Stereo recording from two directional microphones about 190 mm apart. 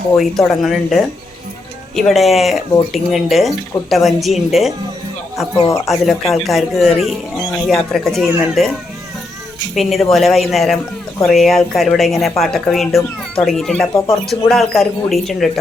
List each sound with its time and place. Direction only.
0.2 s speech: centre (ahead or behind)
5.5 s speech: 30° left (ahead or behind)
5.9 s speech: centre (ahead or behind)
9.7 s speech: centre (ahead or behind)